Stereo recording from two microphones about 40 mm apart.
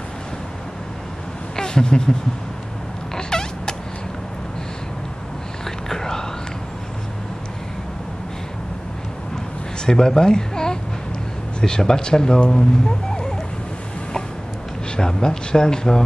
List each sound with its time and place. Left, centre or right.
1.6 s speech: centre
3.2 s cat: centre
5.9 s whispering: centre
9.8 s speech: centre
14.9 s speech: centre